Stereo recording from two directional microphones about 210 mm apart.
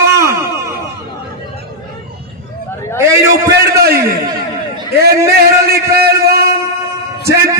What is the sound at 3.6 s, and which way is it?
Speech, 50° right (ahead or behind).